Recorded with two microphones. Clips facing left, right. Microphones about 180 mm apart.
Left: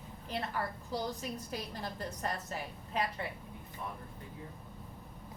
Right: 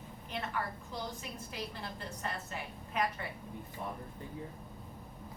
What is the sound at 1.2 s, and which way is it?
A woman's voice, 40° left (ahead or behind).